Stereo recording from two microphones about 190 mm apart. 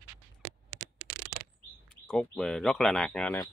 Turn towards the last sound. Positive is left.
turn(degrees=5)  # may be behind; listen again after turning